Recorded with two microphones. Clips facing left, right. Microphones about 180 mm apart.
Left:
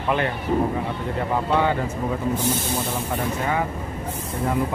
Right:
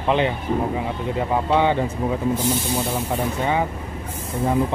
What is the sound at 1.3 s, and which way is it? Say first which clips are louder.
Speech: right 2 dB; 20° right (ahead or behind).